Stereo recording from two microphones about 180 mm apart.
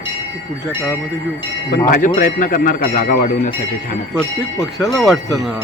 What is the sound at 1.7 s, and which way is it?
Speech, 50° left (ahead or behind).